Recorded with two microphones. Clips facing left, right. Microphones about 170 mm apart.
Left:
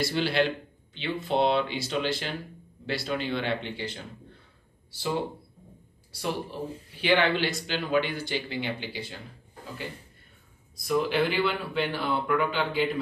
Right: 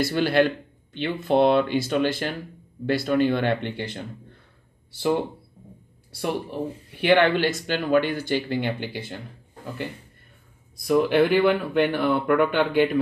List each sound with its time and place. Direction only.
0.0 s speech: 50° right (ahead or behind)
10.8 s speech: 55° right (ahead or behind)